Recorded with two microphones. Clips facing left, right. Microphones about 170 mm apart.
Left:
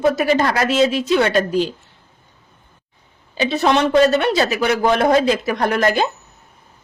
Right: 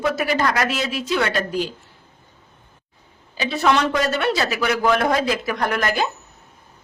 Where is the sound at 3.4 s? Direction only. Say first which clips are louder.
Left 3 dB; 20° left (ahead or behind).